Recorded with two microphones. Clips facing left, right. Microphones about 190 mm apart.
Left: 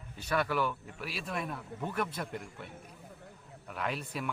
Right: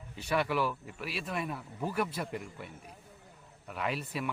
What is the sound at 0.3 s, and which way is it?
A man's voice, 5° right (ahead or behind).